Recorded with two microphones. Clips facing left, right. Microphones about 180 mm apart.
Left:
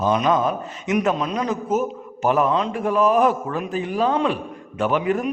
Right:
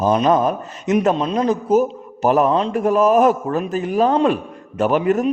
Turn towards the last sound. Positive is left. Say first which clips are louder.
# right 4 dB
turn(degrees=-40)  # may be behind; listen again after turning